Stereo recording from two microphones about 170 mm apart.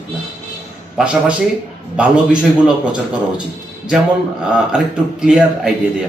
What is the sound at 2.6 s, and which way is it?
Speech, 5° right (ahead or behind).